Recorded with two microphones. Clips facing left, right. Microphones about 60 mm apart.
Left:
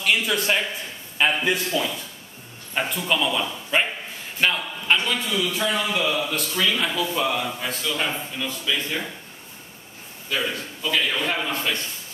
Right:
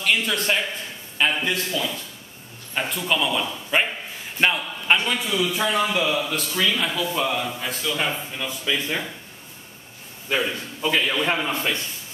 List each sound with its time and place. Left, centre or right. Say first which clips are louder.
0.0 s a man's voice: even; centre
4.4 s a man's voice: right 1 dB; centre
5.9 s speech: right 1 dB; centre
10.3 s a man's voice: right 2 dB; right